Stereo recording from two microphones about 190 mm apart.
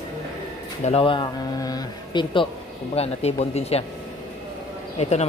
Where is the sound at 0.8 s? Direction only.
30° left (ahead or behind).